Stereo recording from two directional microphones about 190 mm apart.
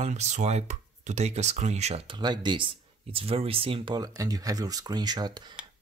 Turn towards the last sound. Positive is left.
turn(degrees=-25)  # may be behind; listen again after turning